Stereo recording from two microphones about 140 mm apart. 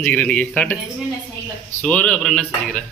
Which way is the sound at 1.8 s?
5° left (ahead or behind).